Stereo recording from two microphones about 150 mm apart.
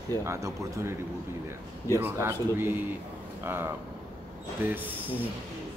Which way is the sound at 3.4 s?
15° right (ahead or behind).